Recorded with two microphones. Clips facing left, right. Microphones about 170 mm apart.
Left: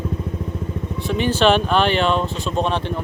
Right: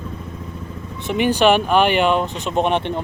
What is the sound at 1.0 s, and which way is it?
Speech, 15° right (ahead or behind).